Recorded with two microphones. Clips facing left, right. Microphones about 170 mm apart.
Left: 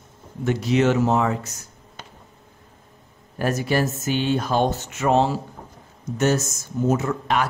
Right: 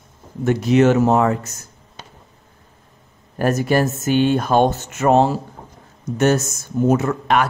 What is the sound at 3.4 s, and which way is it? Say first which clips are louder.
Speech: right 5 dB; 50° right (ahead or behind).